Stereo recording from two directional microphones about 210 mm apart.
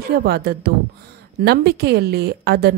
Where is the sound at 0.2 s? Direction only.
50° right (ahead or behind).